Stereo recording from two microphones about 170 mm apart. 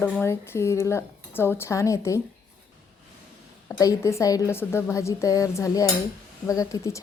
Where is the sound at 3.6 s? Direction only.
20° left (ahead or behind).